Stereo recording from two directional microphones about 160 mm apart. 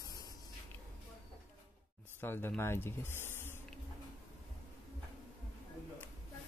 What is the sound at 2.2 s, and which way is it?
Speech, 15° left (ahead or behind).